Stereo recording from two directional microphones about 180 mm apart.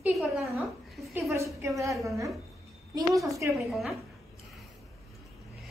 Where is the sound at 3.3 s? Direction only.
15° right (ahead or behind).